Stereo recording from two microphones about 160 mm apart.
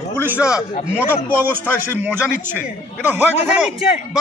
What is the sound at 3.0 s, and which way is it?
Speech, 10° right (ahead or behind).